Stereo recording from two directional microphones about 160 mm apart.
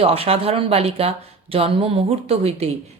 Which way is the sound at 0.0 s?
40° right (ahead or behind).